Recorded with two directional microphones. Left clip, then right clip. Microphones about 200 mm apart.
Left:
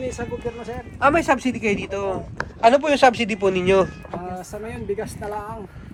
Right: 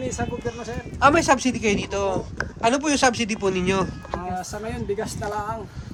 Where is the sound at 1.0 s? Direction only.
5° right (ahead or behind).